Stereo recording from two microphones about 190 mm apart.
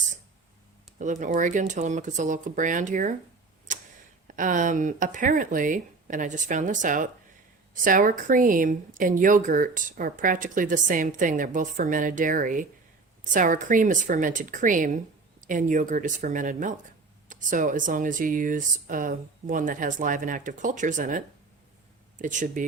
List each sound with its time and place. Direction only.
0.9 s speech: 40° right (ahead or behind)
3.7 s tick-tock: 40° right (ahead or behind)
4.3 s a woman's voice: 45° right (ahead or behind)